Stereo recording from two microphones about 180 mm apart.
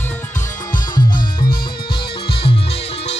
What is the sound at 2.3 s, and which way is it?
Music, 30° left (ahead or behind).